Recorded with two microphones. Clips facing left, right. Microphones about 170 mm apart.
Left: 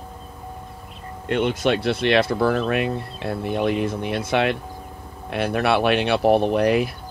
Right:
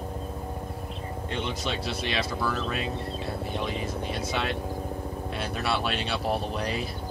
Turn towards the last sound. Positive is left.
turn(degrees=60)  # may be behind; listen again after turning